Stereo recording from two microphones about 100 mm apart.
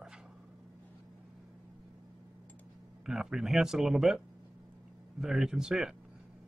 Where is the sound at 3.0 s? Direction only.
5° right (ahead or behind).